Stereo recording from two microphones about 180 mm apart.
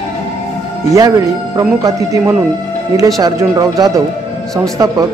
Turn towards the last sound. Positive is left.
turn(degrees=-15)  # may be behind; listen again after turning